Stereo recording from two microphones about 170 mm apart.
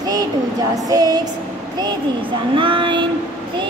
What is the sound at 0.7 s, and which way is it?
Speech, 20° right (ahead or behind).